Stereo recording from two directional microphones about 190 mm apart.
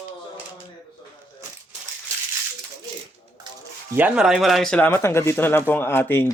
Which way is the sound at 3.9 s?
5° right (ahead or behind).